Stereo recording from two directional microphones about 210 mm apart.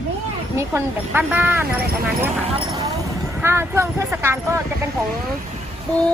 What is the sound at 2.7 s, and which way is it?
Vehicle, 15° right (ahead or behind).